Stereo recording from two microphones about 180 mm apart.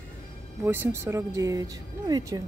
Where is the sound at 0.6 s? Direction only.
15° right (ahead or behind).